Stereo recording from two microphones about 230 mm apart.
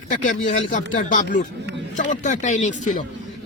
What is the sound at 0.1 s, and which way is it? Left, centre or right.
Speech, left.